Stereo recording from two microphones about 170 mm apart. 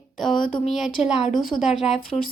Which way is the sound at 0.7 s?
Centre (ahead or behind).